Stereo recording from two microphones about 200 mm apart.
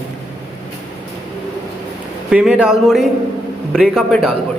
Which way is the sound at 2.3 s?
5° right (ahead or behind).